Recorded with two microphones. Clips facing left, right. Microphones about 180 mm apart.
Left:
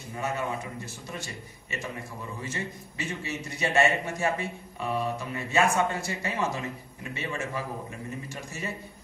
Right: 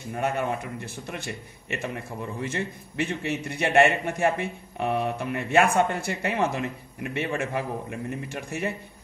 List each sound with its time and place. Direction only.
0.1 s a man's voice: 60° right (ahead or behind)